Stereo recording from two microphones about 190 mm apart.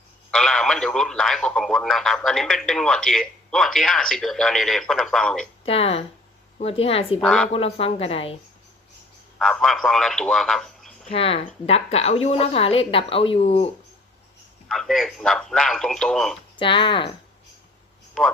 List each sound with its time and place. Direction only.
0.3 s speech: centre (ahead or behind)
5.6 s a woman's voice: 30° left (ahead or behind)
7.2 s speech: centre (ahead or behind)
7.5 s a woman's voice: 30° left (ahead or behind)
9.4 s a man's voice: centre (ahead or behind)
11.1 s a woman's voice: 30° left (ahead or behind)
14.7 s speech: centre (ahead or behind)
16.6 s speech: 25° left (ahead or behind)